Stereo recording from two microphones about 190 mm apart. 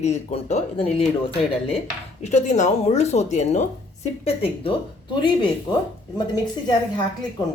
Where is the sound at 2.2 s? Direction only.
40° left (ahead or behind).